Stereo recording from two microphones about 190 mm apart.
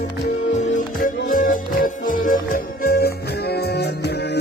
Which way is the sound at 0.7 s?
45° left (ahead or behind).